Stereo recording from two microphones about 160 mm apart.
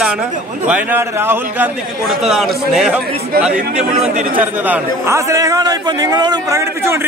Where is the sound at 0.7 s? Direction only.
10° right (ahead or behind).